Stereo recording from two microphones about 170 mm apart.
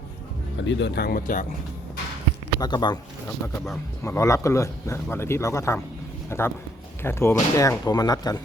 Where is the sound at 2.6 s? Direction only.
25° left (ahead or behind).